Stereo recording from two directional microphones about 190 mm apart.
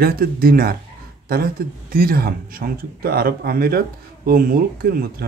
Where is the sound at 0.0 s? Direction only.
50° right (ahead or behind).